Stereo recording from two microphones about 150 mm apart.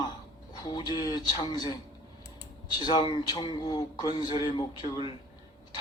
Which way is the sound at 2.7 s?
30° left (ahead or behind).